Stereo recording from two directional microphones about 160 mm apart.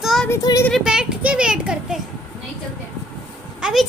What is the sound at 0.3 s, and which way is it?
Speech, 20° left (ahead or behind).